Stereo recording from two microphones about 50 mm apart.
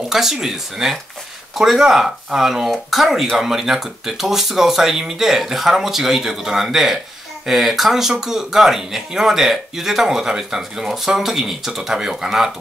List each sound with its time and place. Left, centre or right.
0.1 s speech: centre